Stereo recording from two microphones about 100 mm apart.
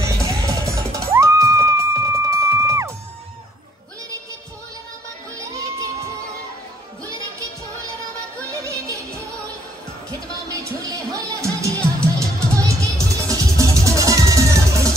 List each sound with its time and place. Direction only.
0.0 s music: 30° right (ahead or behind)
5.3 s crowd: 35° right (ahead or behind)
8.5 s music: 35° right (ahead or behind)
11.1 s music: 35° right (ahead or behind)